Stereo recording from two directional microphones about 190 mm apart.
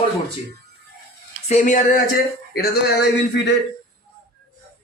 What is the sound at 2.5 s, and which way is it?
Speech, 60° left (ahead or behind).